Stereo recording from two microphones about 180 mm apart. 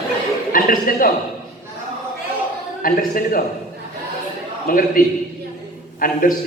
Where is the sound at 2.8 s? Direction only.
50° left (ahead or behind).